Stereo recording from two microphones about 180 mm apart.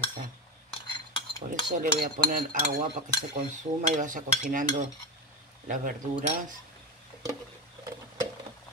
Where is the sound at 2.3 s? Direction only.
50° right (ahead or behind).